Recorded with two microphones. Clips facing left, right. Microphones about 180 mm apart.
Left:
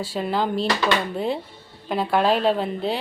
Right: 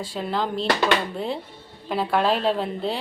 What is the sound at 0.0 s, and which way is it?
A woman's voice, 5° left (ahead or behind).